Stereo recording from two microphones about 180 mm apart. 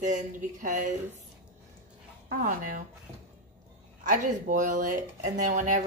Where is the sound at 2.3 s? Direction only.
50° right (ahead or behind).